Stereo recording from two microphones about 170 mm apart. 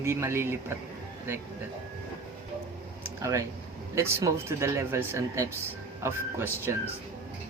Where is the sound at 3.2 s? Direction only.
15° right (ahead or behind).